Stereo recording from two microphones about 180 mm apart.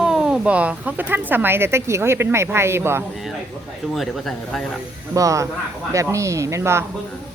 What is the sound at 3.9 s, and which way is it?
Speech, centre (ahead or behind).